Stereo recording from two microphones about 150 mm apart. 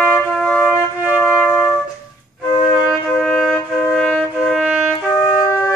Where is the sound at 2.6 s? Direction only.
Centre (ahead or behind).